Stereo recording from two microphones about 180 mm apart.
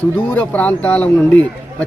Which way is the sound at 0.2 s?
10° left (ahead or behind).